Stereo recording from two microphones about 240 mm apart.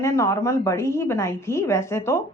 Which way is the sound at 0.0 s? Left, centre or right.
Centre.